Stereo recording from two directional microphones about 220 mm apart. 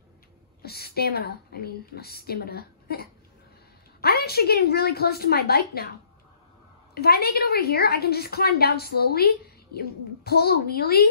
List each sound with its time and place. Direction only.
0.6 s a woman's voice: 45° left (ahead or behind)
6.9 s a woman's voice: 45° left (ahead or behind)